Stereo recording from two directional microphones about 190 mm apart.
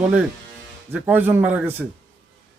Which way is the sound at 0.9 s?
10° right (ahead or behind).